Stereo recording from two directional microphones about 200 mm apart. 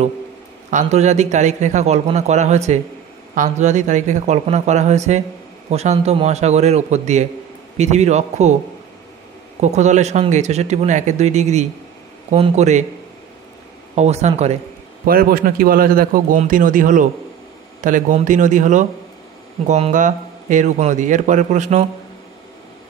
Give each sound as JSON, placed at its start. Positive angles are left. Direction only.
{"t": 0.7, "sound": "a man's voice", "side_deg": -35}
{"t": 9.6, "sound": "a man's voice", "side_deg": -35}
{"t": 13.9, "sound": "a man's voice", "side_deg": -35}
{"t": 15.0, "sound": "a man's voice", "side_deg": -45}